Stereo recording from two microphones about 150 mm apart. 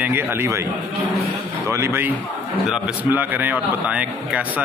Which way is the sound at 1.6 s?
15° right (ahead or behind).